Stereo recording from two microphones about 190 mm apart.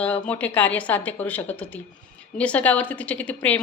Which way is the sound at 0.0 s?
5° left (ahead or behind).